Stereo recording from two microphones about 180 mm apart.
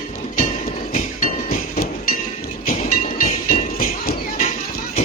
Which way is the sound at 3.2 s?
50° left (ahead or behind).